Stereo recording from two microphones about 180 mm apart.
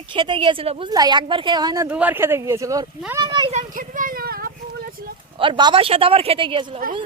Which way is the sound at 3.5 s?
45° right (ahead or behind).